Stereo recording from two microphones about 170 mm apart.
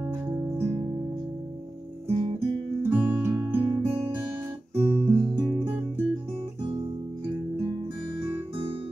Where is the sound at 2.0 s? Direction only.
35° right (ahead or behind).